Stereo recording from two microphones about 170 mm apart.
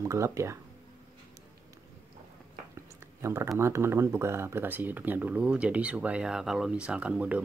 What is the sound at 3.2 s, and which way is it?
Speech, 15° right (ahead or behind).